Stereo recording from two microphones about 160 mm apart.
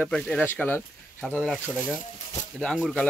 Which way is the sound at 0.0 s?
5° left (ahead or behind).